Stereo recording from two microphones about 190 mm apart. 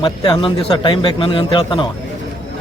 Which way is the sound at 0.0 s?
25° left (ahead or behind).